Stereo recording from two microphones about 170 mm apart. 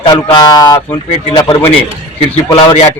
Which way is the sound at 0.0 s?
25° left (ahead or behind).